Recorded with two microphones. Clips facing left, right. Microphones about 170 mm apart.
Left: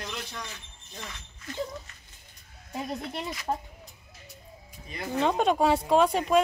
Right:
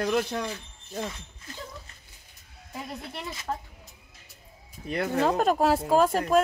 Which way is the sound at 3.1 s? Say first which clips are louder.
Left 2 dB; 20° left (ahead or behind).